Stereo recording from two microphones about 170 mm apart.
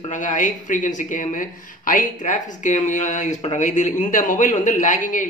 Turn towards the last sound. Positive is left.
turn(degrees=50)  # may be behind; listen again after turning